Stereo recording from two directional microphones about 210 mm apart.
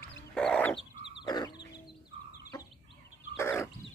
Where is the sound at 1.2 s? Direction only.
20° left (ahead or behind).